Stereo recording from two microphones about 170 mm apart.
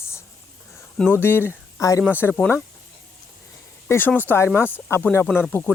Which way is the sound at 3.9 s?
10° left (ahead or behind).